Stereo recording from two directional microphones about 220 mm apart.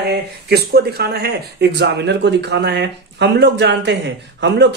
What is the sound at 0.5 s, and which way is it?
Speech, 45° right (ahead or behind).